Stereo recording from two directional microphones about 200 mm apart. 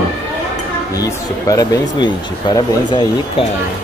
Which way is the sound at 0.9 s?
15° left (ahead or behind).